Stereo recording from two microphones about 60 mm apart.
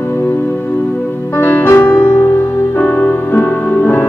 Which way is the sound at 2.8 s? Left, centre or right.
Left.